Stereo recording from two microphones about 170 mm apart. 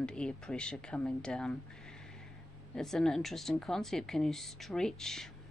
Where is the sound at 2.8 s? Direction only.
Centre (ahead or behind).